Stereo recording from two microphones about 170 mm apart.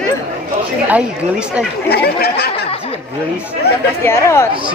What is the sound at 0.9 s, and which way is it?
Speech, 5° right (ahead or behind).